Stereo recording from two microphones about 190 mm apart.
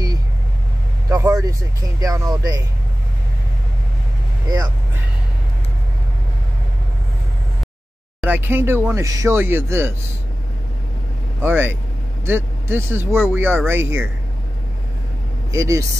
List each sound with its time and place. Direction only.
1.0 s speech: 15° right (ahead or behind)
8.2 s speech: 10° right (ahead or behind)
11.4 s speech: 10° right (ahead or behind)
15.5 s speech: 15° right (ahead or behind)